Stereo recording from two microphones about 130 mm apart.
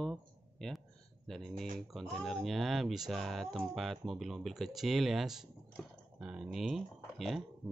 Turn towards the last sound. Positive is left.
turn(degrees=0)  # may be behind; listen again after turning